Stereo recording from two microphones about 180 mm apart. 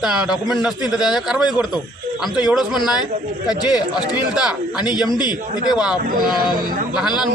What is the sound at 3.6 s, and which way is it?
Speech, 25° left (ahead or behind).